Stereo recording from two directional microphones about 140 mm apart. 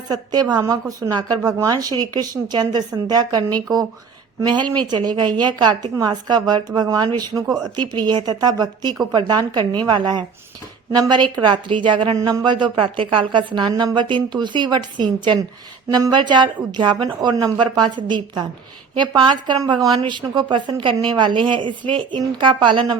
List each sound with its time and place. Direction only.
0.1 s a woman's voice: 30° right (ahead or behind)
18.9 s speech: 30° right (ahead or behind)